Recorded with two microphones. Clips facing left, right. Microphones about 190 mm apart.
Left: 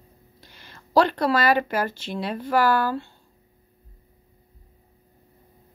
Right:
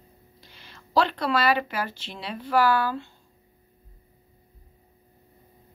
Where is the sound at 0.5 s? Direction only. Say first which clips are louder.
Left 4 dB; 45° left (ahead or behind).